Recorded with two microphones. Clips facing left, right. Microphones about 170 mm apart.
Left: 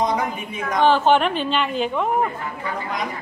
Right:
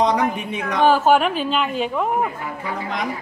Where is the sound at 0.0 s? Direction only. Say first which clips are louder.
Right 3 dB; 75° right (ahead or behind).